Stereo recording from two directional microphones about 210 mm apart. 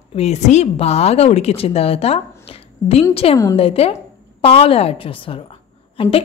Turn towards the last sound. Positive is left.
turn(degrees=25)  # may be behind; listen again after turning